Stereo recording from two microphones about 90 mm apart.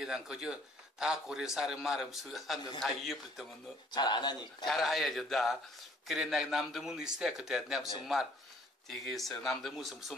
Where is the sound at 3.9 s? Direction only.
55° left (ahead or behind).